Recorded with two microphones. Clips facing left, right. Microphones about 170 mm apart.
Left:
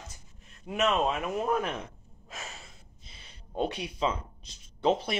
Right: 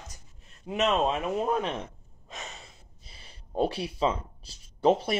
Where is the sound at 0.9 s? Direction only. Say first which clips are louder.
Right 2 dB; 30° right (ahead or behind).